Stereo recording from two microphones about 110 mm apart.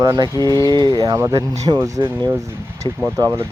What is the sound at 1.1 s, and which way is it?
Speech, 25° right (ahead or behind).